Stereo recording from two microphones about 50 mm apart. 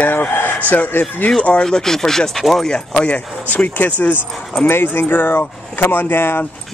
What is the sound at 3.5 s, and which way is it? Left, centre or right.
Speech, left.